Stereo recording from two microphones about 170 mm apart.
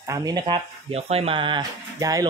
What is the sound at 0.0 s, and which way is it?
Speech, 20° right (ahead or behind).